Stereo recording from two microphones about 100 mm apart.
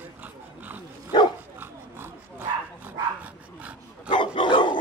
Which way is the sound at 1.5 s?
20° right (ahead or behind).